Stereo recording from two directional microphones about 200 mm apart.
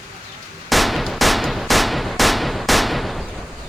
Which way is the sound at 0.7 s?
Centre (ahead or behind).